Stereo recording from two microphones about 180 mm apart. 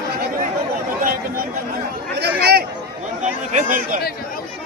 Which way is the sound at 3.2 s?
45° right (ahead or behind).